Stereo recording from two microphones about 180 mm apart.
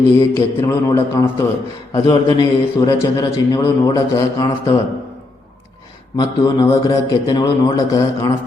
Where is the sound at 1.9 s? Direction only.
25° left (ahead or behind).